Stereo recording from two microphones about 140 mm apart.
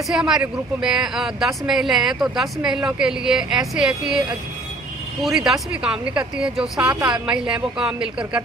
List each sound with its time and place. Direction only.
0.1 s speech: 5° right (ahead or behind)
5.2 s speech: centre (ahead or behind)